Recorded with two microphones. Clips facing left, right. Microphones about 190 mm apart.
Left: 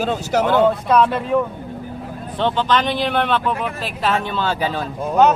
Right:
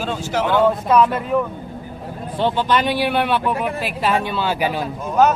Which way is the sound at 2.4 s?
10° right (ahead or behind).